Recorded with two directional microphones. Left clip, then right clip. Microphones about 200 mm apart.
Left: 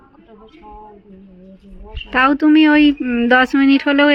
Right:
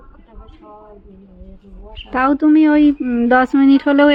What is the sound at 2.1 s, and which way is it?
A woman's voice, 5° right (ahead or behind).